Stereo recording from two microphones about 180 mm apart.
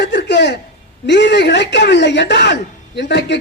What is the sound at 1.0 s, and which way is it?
Speech, 75° left (ahead or behind).